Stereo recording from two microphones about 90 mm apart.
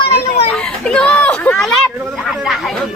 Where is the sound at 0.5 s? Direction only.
10° left (ahead or behind).